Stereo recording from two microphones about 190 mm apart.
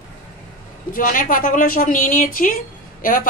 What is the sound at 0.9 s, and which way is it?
A woman's voice, 45° left (ahead or behind).